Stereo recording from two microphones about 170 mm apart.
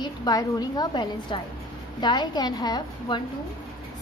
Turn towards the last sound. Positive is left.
turn(degrees=25)  # may be behind; listen again after turning